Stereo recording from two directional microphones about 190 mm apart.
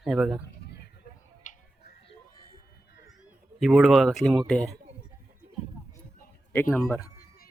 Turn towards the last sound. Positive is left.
turn(degrees=10)  # may be behind; listen again after turning